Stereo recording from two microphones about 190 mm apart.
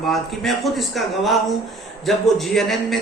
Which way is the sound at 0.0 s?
Centre (ahead or behind).